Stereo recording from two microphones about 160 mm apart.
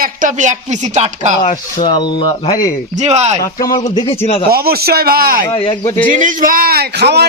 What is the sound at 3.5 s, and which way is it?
Speech, 25° left (ahead or behind).